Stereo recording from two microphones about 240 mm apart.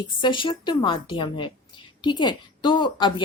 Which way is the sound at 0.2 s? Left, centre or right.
Centre.